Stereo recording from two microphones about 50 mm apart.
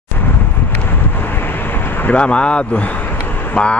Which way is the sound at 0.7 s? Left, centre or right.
Left.